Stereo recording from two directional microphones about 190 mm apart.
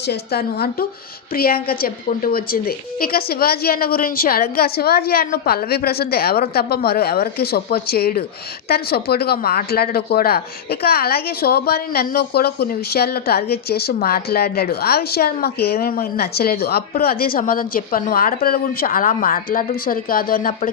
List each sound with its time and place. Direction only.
0.1 s speech: 55° left (ahead or behind)